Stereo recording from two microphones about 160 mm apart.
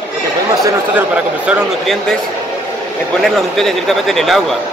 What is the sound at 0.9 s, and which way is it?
Speech, 5° right (ahead or behind).